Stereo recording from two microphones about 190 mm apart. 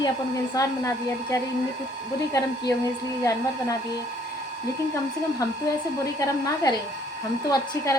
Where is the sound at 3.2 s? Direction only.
15° left (ahead or behind).